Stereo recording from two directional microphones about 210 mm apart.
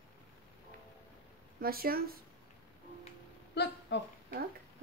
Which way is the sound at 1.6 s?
45° right (ahead or behind).